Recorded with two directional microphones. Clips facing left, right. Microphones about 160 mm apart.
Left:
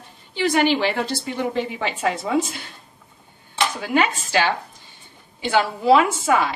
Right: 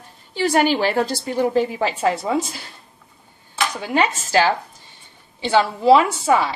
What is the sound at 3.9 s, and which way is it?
A woman's voice, 35° right (ahead or behind).